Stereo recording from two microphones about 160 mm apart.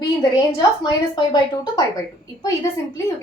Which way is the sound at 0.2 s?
25° left (ahead or behind).